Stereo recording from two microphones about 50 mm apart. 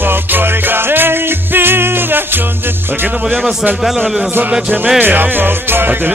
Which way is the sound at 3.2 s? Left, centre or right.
Centre.